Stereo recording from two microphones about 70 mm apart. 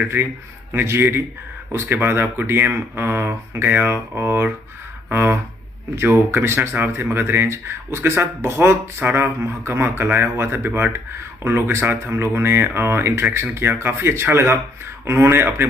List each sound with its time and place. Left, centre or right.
0.2 s speech: right